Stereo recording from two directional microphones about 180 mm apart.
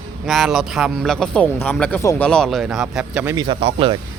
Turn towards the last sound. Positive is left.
turn(degrees=-30)  # may be behind; listen again after turning